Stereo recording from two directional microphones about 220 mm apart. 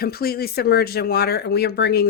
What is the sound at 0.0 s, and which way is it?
Speech, 45° left (ahead or behind).